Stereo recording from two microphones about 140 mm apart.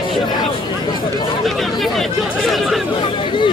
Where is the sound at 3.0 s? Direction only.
35° left (ahead or behind).